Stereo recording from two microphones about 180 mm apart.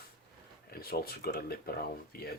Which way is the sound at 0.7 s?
55° left (ahead or behind).